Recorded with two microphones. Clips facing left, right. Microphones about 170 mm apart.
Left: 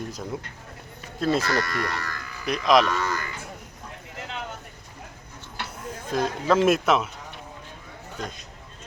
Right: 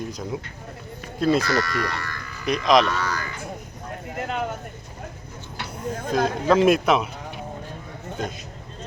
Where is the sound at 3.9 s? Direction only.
55° right (ahead or behind).